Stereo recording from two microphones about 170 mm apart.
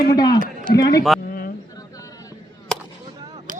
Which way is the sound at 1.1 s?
Centre (ahead or behind).